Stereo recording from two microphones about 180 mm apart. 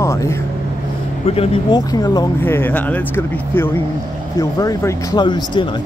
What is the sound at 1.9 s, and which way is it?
Speech, 20° left (ahead or behind).